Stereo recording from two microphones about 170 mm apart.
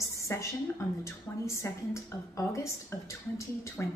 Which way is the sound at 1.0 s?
15° left (ahead or behind).